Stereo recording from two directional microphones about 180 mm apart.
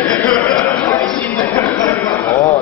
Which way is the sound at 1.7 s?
20° left (ahead or behind).